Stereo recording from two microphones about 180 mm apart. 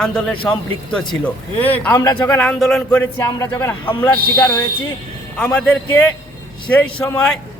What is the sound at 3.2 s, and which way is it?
Speech, 20° left (ahead or behind).